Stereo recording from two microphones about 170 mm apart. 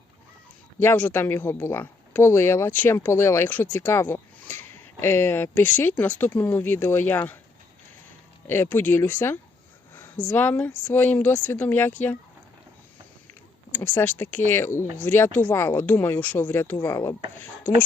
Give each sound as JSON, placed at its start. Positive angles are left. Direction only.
{"t": 0.8, "sound": "speech", "side_deg": 10}
{"t": 8.4, "sound": "speech", "side_deg": 15}
{"t": 13.7, "sound": "speech", "side_deg": 10}